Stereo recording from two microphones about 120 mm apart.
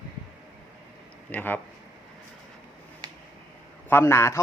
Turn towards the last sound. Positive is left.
turn(degrees=20)  # may be behind; listen again after turning